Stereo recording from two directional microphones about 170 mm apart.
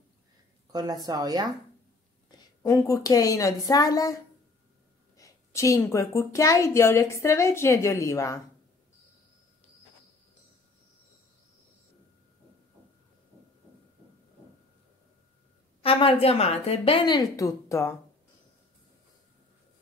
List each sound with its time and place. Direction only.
0.7 s speech: 25° right (ahead or behind)
2.6 s a woman's voice: 20° left (ahead or behind)
15.8 s a woman's voice: 35° left (ahead or behind); by 17.9 s 15° left (ahead or behind)